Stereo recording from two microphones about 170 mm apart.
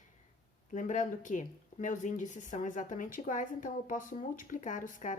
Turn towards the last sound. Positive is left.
turn(degrees=50)  # may be behind; listen again after turning